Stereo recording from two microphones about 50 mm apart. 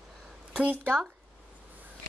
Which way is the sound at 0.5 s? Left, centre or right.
Right.